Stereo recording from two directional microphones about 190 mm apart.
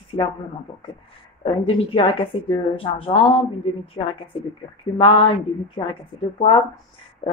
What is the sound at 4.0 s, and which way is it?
Speech, 15° left (ahead or behind).